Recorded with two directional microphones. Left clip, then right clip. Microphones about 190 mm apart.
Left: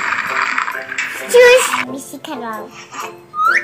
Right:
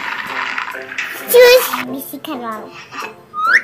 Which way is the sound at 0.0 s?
10° right (ahead or behind).